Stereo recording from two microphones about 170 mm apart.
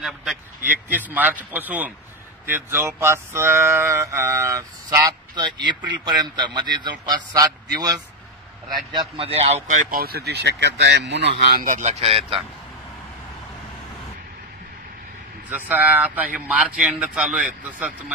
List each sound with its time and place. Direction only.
0.0 s a man's voice: centre (ahead or behind)
2.4 s a sound: 10° right (ahead or behind)
9.1 s speech: 35° right (ahead or behind); by 11.6 s 70° right (ahead or behind)
11.6 s speech: 45° right (ahead or behind)
15.5 s a man's voice: 10° right (ahead or behind)